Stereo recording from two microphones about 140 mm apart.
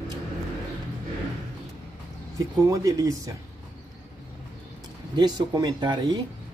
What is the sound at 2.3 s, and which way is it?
Speech, 25° right (ahead or behind).